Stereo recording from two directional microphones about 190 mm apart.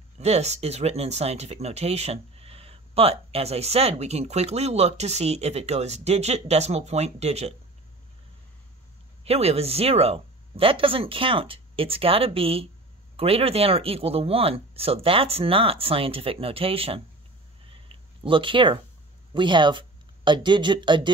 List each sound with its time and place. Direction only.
0.2 s speech: 35° right (ahead or behind)
9.2 s speech: 30° right (ahead or behind)
17.6 s a sound: 30° right (ahead or behind)
19.3 s speech: 25° right (ahead or behind)